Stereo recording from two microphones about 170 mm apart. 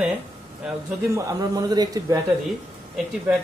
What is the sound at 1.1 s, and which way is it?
Speech, 20° right (ahead or behind).